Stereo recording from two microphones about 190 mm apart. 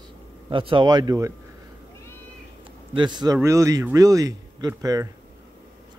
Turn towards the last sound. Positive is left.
turn(degrees=-20)  # may be behind; listen again after turning